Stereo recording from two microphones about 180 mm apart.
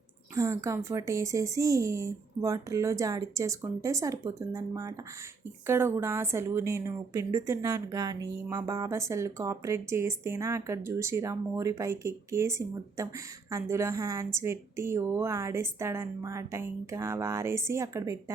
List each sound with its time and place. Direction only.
0.3 s a woman's voice: 15° right (ahead or behind)